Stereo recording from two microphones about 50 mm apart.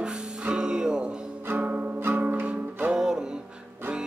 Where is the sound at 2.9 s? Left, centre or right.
Centre.